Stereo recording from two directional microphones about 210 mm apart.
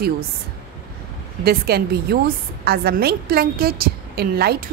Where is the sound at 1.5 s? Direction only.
50° right (ahead or behind).